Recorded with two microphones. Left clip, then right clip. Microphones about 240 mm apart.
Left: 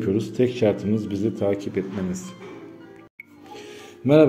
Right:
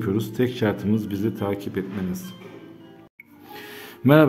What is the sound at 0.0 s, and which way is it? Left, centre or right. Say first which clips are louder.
Speech: left 2 dB; centre.